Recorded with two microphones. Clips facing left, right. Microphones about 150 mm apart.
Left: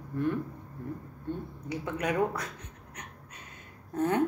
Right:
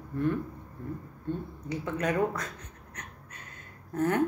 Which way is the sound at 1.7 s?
10° left (ahead or behind).